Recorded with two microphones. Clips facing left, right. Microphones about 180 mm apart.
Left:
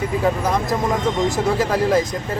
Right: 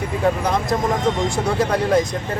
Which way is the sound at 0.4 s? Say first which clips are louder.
Even; centre (ahead or behind).